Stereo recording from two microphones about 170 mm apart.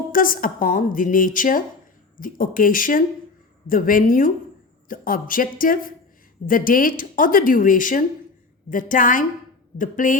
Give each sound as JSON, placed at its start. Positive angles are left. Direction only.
{"t": 0.1, "sound": "speech", "side_deg": 55}